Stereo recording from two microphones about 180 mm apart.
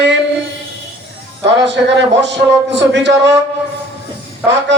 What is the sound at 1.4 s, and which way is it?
A man's voice, 75° right (ahead or behind).